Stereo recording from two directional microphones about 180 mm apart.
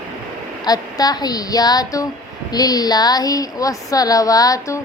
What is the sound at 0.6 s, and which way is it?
Speech, 20° left (ahead or behind).